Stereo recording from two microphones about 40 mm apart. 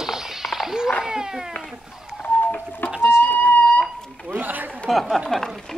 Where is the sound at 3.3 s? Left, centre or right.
Left.